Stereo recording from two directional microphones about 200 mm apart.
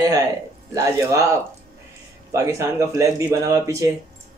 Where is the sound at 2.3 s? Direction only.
15° right (ahead or behind).